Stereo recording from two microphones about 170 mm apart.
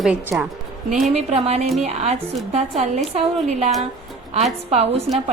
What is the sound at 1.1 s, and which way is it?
Speech, 35° right (ahead or behind).